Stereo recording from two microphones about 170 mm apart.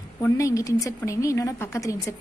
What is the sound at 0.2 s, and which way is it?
A woman's voice, 20° left (ahead or behind).